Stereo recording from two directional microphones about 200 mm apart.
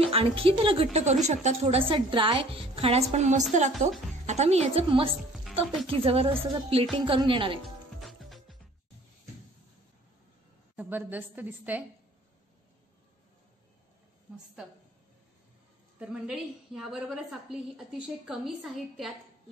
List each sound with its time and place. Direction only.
0.0 s a woman's voice: 30° right (ahead or behind)
8.0 s music: centre (ahead or behind)
10.8 s a woman's voice: 10° right (ahead or behind)
16.0 s a woman's voice: 5° right (ahead or behind)